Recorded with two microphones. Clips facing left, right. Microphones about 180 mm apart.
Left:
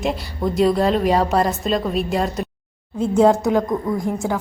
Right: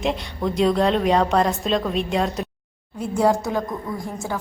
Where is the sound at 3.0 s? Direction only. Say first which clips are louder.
Left 5 dB; 20° left (ahead or behind).